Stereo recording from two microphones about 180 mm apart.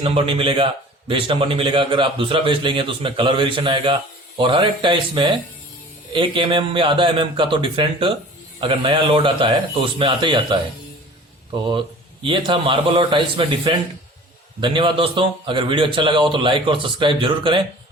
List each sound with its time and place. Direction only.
0.0 s a man's voice: 30° right (ahead or behind)
11.7 s a man's voice: 25° right (ahead or behind)